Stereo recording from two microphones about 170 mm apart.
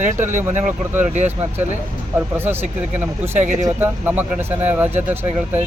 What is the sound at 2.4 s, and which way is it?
Speech, 10° right (ahead or behind).